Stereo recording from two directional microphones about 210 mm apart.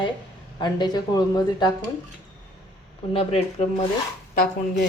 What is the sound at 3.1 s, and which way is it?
Speech, 30° left (ahead or behind).